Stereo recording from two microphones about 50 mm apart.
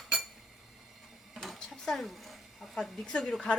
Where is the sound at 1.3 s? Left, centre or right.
Centre.